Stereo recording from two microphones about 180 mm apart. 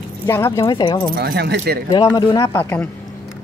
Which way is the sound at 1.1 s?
65° right (ahead or behind).